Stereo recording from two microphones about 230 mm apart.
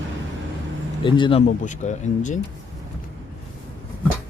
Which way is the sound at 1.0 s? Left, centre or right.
Left.